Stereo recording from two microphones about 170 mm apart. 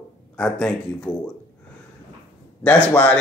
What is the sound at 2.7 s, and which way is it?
Speech, 10° left (ahead or behind).